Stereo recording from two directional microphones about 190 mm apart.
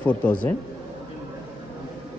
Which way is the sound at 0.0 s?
5° left (ahead or behind).